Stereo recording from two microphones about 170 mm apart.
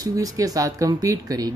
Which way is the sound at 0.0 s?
20° right (ahead or behind).